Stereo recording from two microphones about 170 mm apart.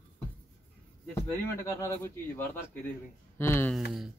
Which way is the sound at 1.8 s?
15° left (ahead or behind).